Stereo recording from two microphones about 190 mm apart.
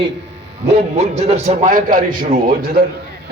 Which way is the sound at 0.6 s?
35° right (ahead or behind).